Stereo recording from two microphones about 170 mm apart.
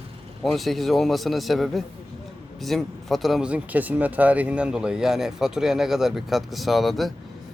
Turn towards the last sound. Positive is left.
turn(degrees=0)  # may be behind; listen again after turning